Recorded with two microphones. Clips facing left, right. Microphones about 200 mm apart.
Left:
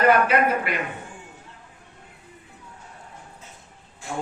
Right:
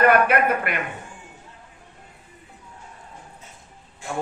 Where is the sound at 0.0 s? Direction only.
55° right (ahead or behind).